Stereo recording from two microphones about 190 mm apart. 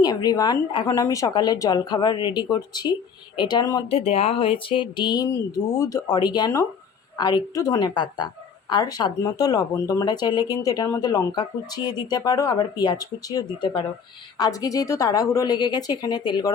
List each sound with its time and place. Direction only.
0.0 s speech: 20° left (ahead or behind)